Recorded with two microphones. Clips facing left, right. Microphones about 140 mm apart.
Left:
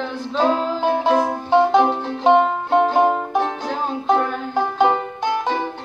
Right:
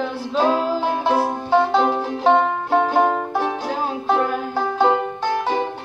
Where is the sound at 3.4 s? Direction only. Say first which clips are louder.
Even; 5° right (ahead or behind).